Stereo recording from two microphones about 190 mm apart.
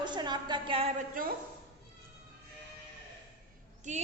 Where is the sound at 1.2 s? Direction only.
45° right (ahead or behind).